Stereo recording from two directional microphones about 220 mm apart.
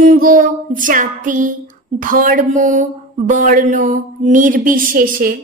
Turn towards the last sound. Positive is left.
turn(degrees=-40)  # may be behind; listen again after turning